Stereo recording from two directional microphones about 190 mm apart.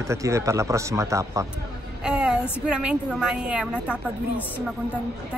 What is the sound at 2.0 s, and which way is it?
A woman's voice, 5° right (ahead or behind).